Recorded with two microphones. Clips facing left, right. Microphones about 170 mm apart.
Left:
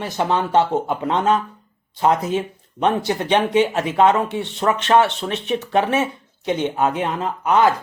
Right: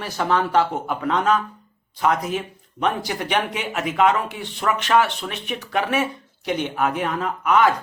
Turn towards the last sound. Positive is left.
turn(degrees=30)  # may be behind; listen again after turning